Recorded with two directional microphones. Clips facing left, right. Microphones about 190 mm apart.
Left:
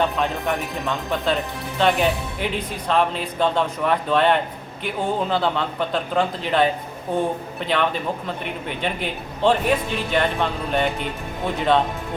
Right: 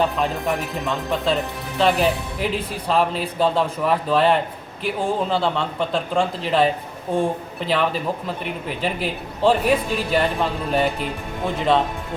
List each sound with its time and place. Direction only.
0.0 s speech: centre (ahead or behind)